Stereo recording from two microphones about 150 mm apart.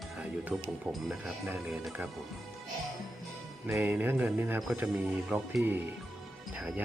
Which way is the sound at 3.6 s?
15° right (ahead or behind).